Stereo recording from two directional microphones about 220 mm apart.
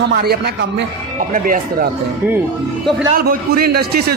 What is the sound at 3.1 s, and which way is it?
A man's voice, 40° right (ahead or behind).